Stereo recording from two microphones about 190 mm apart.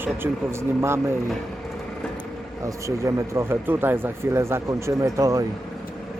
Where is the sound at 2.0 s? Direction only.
5° left (ahead or behind).